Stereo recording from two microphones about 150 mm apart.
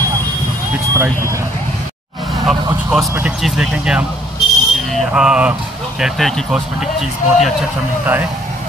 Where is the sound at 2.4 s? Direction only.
5° right (ahead or behind).